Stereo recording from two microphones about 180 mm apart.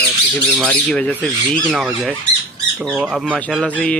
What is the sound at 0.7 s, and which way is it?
Speech, 10° left (ahead or behind).